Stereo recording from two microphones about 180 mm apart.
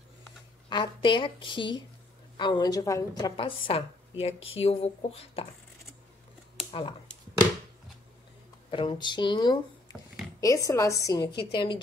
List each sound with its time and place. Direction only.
0.7 s a woman's voice: 25° left (ahead or behind)
6.7 s a sound: 25° left (ahead or behind)
8.6 s a woman's voice: 25° left (ahead or behind)